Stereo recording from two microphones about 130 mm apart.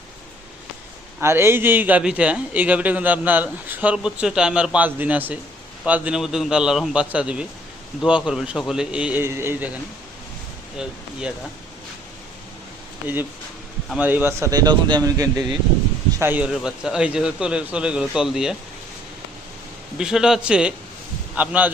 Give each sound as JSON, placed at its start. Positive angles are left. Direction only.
{"t": 1.2, "sound": "a man's voice", "side_deg": -20}
{"t": 9.2, "sound": "speech", "side_deg": -20}
{"t": 10.8, "sound": "speech", "side_deg": -5}
{"t": 13.9, "sound": "speech", "side_deg": -15}
{"t": 16.1, "sound": "a man's voice", "side_deg": -15}
{"t": 16.5, "sound": "speech", "side_deg": -5}
{"t": 20.0, "sound": "a man's voice", "side_deg": -5}